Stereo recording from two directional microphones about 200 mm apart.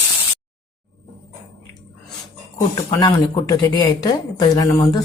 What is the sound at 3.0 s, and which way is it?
Speech, 20° left (ahead or behind).